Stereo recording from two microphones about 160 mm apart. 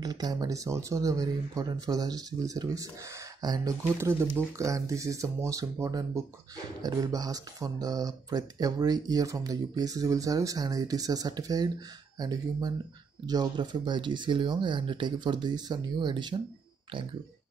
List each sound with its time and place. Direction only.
0.0 s speech: 25° right (ahead or behind)